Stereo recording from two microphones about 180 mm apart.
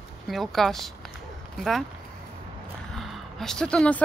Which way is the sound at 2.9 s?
Centre (ahead or behind).